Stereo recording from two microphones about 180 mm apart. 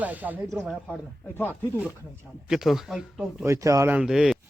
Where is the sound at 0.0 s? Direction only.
10° right (ahead or behind).